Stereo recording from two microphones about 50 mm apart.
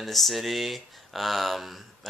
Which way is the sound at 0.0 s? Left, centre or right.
Centre.